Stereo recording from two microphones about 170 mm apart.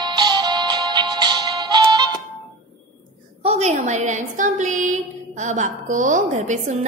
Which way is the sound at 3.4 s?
40° right (ahead or behind).